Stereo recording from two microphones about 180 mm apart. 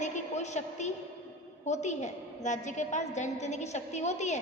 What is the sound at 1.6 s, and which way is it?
A woman's voice, 40° left (ahead or behind).